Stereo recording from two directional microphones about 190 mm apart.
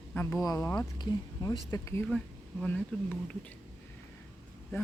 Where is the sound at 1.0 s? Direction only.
20° left (ahead or behind).